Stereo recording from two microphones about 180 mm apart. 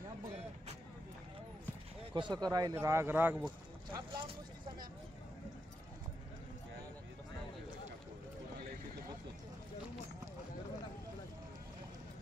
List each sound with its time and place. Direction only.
2.1 s speech: 25° right (ahead or behind)
3.4 s speech: 25° right (ahead or behind)